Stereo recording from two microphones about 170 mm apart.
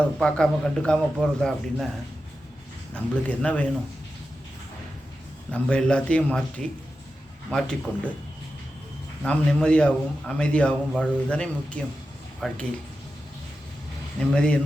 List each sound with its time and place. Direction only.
0.2 s a man's voice: 5° left (ahead or behind)
2.9 s a man's voice: 10° left (ahead or behind)
5.5 s a man's voice: 5° left (ahead or behind)
9.2 s a man's voice: 5° left (ahead or behind)
14.2 s a man's voice: 5° left (ahead or behind)